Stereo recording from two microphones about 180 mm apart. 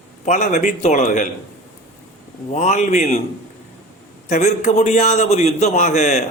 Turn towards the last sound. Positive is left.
turn(degrees=40)  # may be behind; listen again after turning